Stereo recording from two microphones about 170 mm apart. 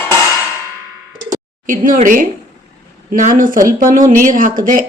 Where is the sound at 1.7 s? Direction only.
50° right (ahead or behind).